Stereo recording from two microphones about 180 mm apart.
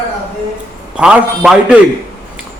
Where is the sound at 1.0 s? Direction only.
5° right (ahead or behind).